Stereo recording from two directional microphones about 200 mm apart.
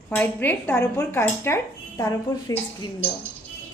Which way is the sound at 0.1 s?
10° left (ahead or behind).